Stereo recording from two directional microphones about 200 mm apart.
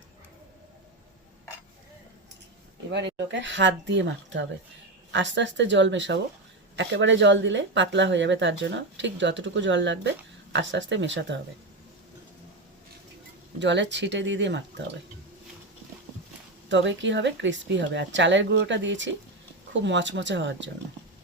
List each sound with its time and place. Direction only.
3.3 s speech: 65° right (ahead or behind)
13.6 s speech: 60° right (ahead or behind)
16.6 s speech: 65° right (ahead or behind)